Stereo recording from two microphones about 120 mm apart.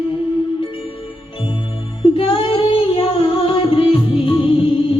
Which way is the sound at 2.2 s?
50° left (ahead or behind).